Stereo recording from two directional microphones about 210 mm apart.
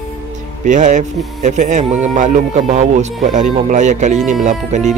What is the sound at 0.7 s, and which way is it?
Speech, 35° right (ahead or behind).